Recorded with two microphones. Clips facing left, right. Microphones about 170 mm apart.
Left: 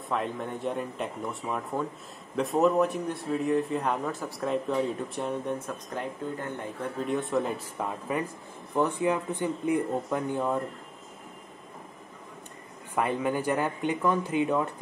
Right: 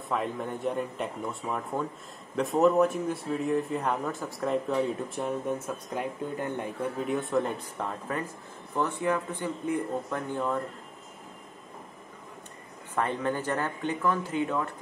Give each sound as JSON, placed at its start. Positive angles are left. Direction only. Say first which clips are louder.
{"t": 0.1, "sound": "speech", "louder": "even", "side_deg": 0}
{"t": 7.0, "sound": "speech", "louder": "left 1 dB", "side_deg": 0}
{"t": 12.9, "sound": "speech", "louder": "left 2 dB", "side_deg": 10}